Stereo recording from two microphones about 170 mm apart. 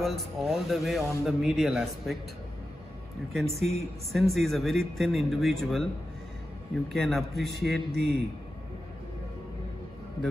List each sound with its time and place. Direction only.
0.0 s speech: centre (ahead or behind)
3.3 s speech: centre (ahead or behind)
6.9 s speech: centre (ahead or behind)
7.6 s a man's voice: 70° right (ahead or behind)